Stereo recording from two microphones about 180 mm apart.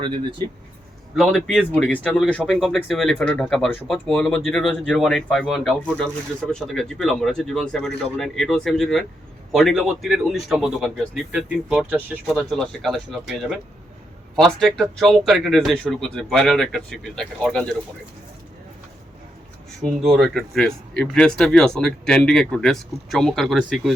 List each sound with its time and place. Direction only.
0.0 s speech: 25° right (ahead or behind)
1.1 s speech: centre (ahead or behind)
19.8 s speech: centre (ahead or behind)